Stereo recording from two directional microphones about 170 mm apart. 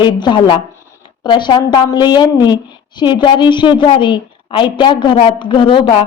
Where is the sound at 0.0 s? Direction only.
25° left (ahead or behind).